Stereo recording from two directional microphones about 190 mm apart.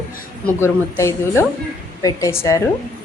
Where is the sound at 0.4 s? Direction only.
15° left (ahead or behind).